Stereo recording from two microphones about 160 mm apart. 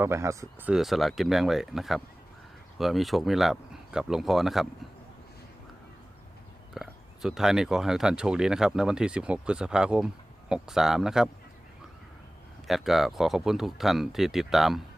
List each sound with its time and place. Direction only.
0.0 s speech: 15° right (ahead or behind)
0.7 s speech: centre (ahead or behind)
6.7 s speech: centre (ahead or behind)
12.6 s speech: centre (ahead or behind)